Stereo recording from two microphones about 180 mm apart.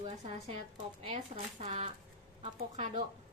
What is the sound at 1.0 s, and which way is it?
Speech, 35° right (ahead or behind).